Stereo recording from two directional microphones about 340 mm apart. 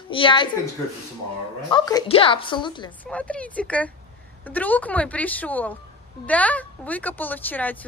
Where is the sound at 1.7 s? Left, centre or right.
Centre.